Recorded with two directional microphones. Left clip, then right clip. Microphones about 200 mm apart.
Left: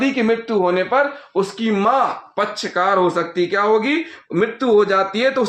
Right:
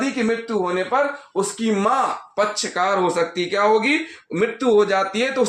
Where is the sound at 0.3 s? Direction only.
40° left (ahead or behind).